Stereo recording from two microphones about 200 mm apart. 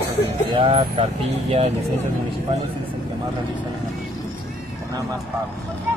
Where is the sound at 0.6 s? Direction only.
25° right (ahead or behind).